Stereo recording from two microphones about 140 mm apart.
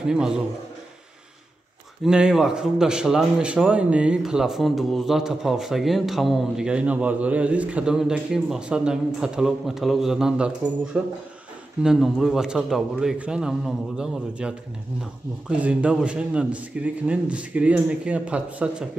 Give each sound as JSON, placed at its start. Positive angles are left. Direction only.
{"t": 0.0, "sound": "a man's voice", "side_deg": -5}
{"t": 2.0, "sound": "a man's voice", "side_deg": -5}